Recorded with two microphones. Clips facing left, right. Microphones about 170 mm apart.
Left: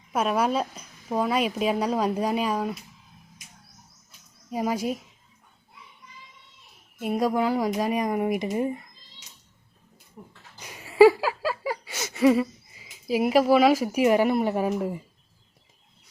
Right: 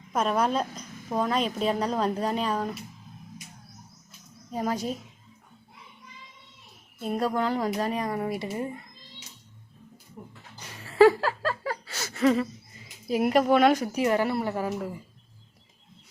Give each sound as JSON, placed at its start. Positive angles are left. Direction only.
{"t": 0.1, "sound": "a woman's voice", "side_deg": 10}
{"t": 4.5, "sound": "a woman's voice", "side_deg": 10}
{"t": 7.0, "sound": "a woman's voice", "side_deg": 10}
{"t": 10.2, "sound": "speech", "side_deg": -5}
{"t": 10.6, "sound": "a sound", "side_deg": 15}